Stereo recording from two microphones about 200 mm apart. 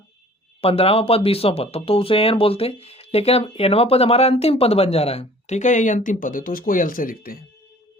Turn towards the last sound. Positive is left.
turn(degrees=45)  # may be behind; listen again after turning